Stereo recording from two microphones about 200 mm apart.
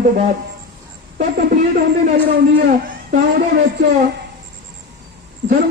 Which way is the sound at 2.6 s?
45° right (ahead or behind).